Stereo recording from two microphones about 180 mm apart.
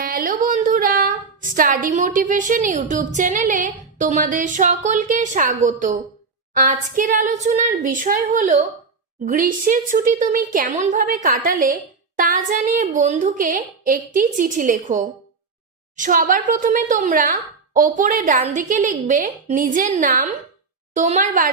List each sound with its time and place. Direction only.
0.0 s female singing: 55° right (ahead or behind)
6.5 s a woman's voice: 45° right (ahead or behind)